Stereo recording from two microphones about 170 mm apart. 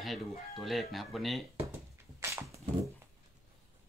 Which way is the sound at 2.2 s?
15° right (ahead or behind).